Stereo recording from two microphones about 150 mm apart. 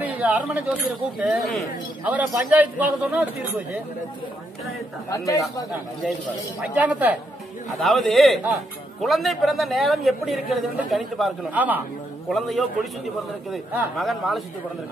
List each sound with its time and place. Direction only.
0.0 s a man's voice: 10° right (ahead or behind)
5.1 s speech: 20° left (ahead or behind)
6.6 s a man's voice: 10° right (ahead or behind)
7.8 s a man's voice: centre (ahead or behind)
11.5 s a man's voice: 10° right (ahead or behind)
12.3 s a man's voice: centre (ahead or behind)
13.9 s a man's voice: centre (ahead or behind)